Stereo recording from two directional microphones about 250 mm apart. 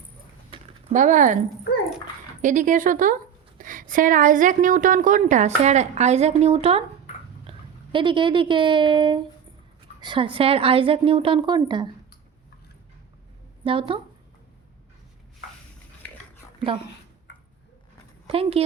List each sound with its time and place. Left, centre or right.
0.5 s a sound: right
2.4 s a woman's voice: right
7.9 s a woman's voice: centre
13.7 s a woman's voice: right
18.3 s speech: right